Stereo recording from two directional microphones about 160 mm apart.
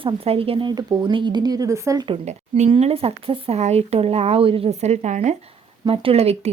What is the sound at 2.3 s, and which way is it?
Speech, 45° right (ahead or behind).